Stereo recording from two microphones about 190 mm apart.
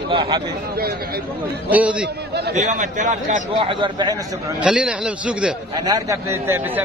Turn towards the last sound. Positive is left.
turn(degrees=-10)  # may be behind; listen again after turning